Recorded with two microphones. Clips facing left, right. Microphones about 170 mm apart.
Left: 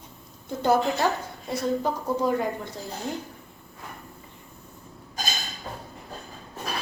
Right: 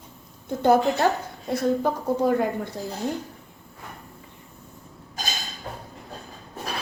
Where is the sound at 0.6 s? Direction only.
55° right (ahead or behind).